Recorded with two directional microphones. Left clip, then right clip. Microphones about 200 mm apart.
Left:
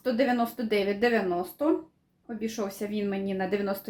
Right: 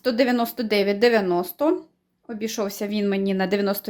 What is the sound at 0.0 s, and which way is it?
Speech, 50° right (ahead or behind).